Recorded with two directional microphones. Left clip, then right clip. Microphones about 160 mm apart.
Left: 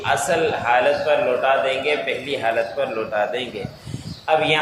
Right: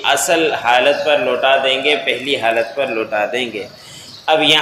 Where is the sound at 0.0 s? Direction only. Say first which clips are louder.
Right 5 dB; 30° right (ahead or behind).